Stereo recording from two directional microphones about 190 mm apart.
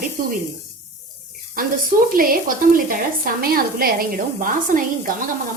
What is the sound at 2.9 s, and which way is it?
A woman's voice, 50° right (ahead or behind).